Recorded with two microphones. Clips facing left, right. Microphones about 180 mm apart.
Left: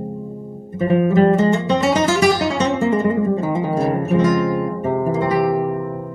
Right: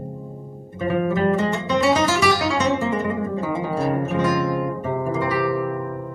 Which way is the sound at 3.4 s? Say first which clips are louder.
Left 4 dB; 40° left (ahead or behind).